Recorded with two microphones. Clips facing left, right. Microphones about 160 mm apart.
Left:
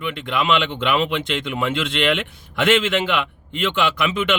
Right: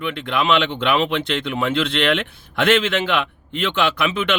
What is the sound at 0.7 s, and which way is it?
A man's voice, 35° right (ahead or behind).